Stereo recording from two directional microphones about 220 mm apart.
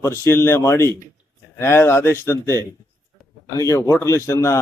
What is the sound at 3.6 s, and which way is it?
Speech, 15° left (ahead or behind).